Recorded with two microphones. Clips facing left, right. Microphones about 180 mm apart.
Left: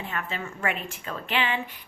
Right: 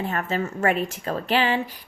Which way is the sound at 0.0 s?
40° right (ahead or behind).